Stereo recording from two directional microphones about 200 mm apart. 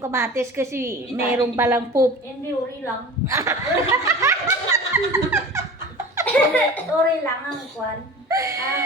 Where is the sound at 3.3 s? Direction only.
15° right (ahead or behind).